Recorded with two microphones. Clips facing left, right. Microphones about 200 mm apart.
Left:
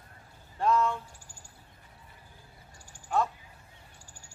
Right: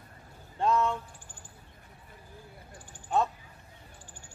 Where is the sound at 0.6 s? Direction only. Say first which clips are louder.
Even; 20° right (ahead or behind).